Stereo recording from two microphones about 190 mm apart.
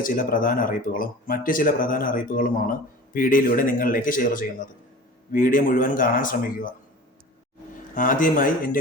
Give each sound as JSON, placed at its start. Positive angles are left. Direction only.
{"t": 0.0, "sound": "speech", "side_deg": 45}
{"t": 7.9, "sound": "speech", "side_deg": 45}